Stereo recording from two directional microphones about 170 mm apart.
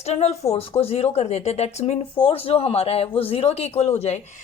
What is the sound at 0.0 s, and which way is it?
A woman's voice, 40° left (ahead or behind).